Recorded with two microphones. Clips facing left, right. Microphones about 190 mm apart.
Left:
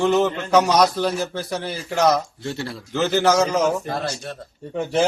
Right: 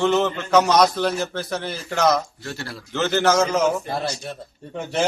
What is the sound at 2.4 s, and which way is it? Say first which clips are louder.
Speech: left 5 dB; 25° left (ahead or behind).